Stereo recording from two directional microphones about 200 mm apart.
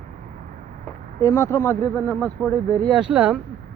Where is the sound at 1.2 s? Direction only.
15° left (ahead or behind).